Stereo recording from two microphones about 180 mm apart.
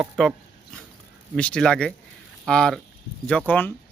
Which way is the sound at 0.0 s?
Centre (ahead or behind).